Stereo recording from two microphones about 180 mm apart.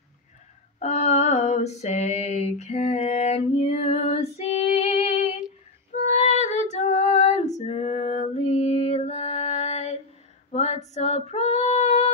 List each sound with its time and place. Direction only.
0.7 s female singing: 40° left (ahead or behind)
11.0 s child singing: 40° left (ahead or behind)